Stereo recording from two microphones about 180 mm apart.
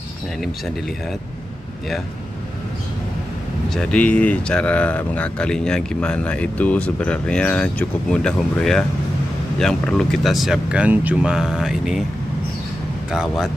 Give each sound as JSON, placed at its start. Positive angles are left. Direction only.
{"t": 3.7, "sound": "speech", "side_deg": 5}
{"t": 13.1, "sound": "speech", "side_deg": -5}